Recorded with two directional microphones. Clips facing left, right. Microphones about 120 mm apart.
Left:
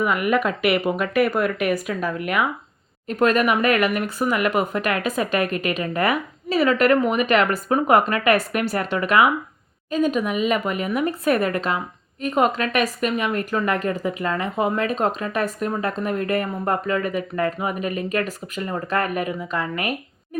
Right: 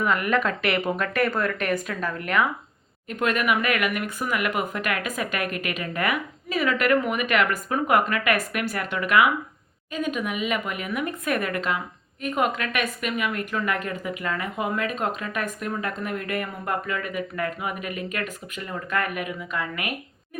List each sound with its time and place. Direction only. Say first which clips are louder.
0.0 s speech: left 3 dB; 10° left (ahead or behind)
3.2 s speech: left 5 dB; 35° left (ahead or behind)